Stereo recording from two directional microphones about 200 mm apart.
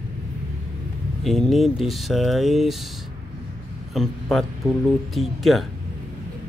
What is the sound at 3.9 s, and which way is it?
A man's voice, centre (ahead or behind).